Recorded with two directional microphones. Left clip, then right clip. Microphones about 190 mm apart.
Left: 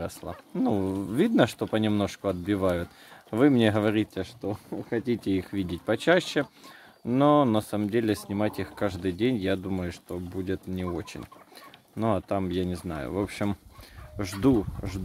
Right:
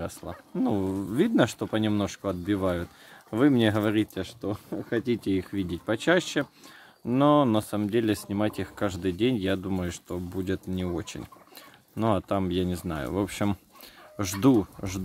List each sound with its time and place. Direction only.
0.0 s speech: centre (ahead or behind); by 15.0 s 20° right (ahead or behind)